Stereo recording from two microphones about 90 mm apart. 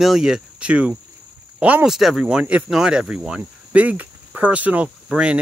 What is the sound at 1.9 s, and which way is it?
Speech, 5° right (ahead or behind).